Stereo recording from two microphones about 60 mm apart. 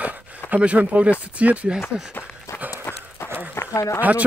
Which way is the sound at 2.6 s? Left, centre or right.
Right.